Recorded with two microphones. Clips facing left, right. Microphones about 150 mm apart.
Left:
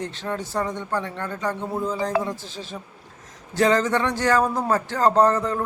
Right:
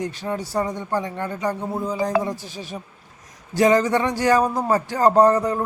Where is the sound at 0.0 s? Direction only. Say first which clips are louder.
Right 2 dB; 10° right (ahead or behind).